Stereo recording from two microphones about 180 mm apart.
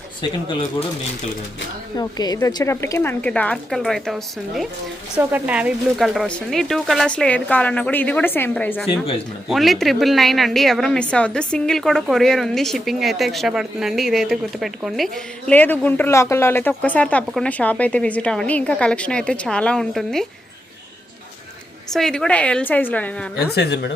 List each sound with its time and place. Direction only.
2.0 s a woman's voice: 20° left (ahead or behind); by 20.2 s centre (ahead or behind)
21.9 s speech: 5° left (ahead or behind)
23.6 s speech: 70° left (ahead or behind)